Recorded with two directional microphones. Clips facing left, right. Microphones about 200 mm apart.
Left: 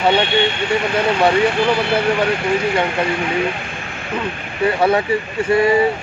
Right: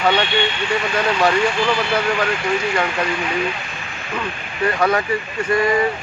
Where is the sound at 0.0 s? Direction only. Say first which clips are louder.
Left 3 dB; 25° left (ahead or behind).